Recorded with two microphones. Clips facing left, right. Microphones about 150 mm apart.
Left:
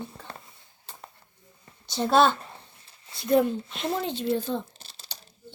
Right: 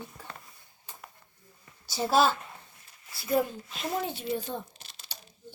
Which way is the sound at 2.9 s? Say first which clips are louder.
Left 1 dB; 30° left (ahead or behind).